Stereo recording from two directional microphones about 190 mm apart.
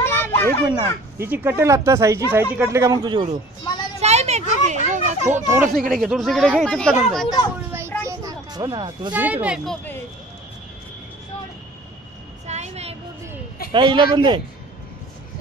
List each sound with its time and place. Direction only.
0.0 s children playing: 10° left (ahead or behind)
0.7 s speech: 15° right (ahead or behind)
3.6 s a sound: 20° left (ahead or behind)
4.0 s a child's voice: 35° right (ahead or behind)
5.7 s speech: centre (ahead or behind)
8.1 s a sound: 20° right (ahead or behind)
9.1 s speech: 10° right (ahead or behind)
12.4 s a sound: 35° right (ahead or behind)
13.7 s speech: 25° right (ahead or behind)